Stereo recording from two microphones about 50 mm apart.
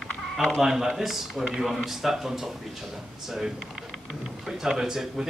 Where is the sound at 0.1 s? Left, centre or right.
Centre.